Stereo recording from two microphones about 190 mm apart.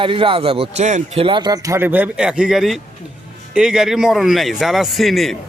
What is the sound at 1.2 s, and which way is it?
Speech, 25° right (ahead or behind).